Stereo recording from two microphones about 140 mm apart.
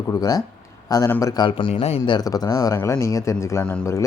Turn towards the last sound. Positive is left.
turn(degrees=10)  # may be behind; listen again after turning